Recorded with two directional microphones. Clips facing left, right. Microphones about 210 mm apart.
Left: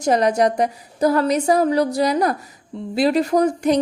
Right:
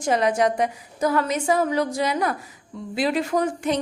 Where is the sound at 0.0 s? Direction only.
40° left (ahead or behind).